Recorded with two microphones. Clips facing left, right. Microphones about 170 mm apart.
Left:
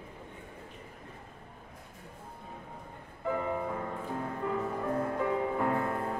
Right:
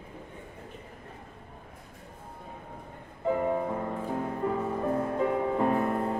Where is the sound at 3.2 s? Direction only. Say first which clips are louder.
Right 5 dB; 25° right (ahead or behind).